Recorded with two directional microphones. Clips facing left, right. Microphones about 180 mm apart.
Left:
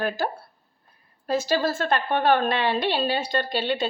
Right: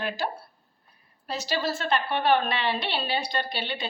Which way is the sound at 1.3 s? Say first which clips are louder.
Left 6 dB; 50° left (ahead or behind).